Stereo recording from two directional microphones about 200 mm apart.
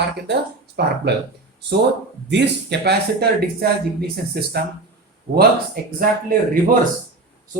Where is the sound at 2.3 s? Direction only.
60° right (ahead or behind).